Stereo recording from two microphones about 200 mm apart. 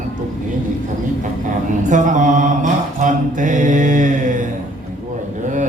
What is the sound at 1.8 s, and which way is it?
Mantra, 40° right (ahead or behind).